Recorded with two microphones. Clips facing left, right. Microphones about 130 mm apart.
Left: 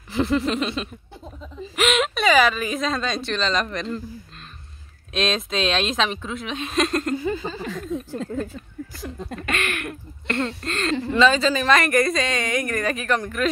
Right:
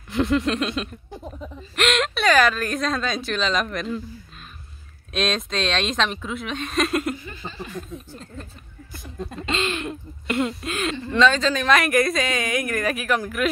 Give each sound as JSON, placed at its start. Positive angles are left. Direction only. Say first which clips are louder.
{"t": 0.1, "sound": "speech", "louder": "even", "side_deg": 0}
{"t": 1.1, "sound": "a sound", "louder": "right 4 dB", "side_deg": -15}
{"t": 1.8, "sound": "speech", "louder": "left 1 dB", "side_deg": 0}
{"t": 5.1, "sound": "speech", "louder": "left 1 dB", "side_deg": 0}
{"t": 7.7, "sound": "speech", "louder": "left 7 dB", "side_deg": 90}
{"t": 9.4, "sound": "speech", "louder": "right 2 dB", "side_deg": -20}